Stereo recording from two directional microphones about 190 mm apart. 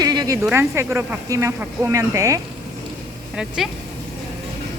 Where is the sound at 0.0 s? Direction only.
20° right (ahead or behind).